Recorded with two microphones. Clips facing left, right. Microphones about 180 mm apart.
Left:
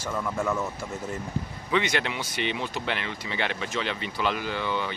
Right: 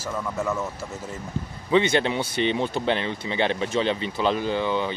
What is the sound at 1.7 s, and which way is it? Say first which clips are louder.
Speech: right 6 dB; 30° right (ahead or behind).